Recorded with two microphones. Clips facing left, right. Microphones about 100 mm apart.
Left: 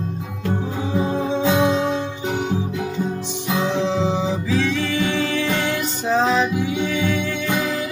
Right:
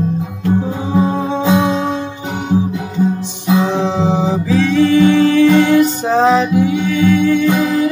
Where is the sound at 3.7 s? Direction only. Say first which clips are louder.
Right 5 dB; 45° right (ahead or behind).